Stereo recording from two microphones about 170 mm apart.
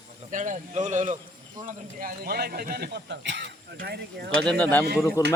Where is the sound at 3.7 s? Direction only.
65° right (ahead or behind).